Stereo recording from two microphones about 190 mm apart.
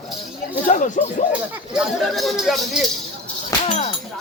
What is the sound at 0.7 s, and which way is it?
Speech, 40° left (ahead or behind).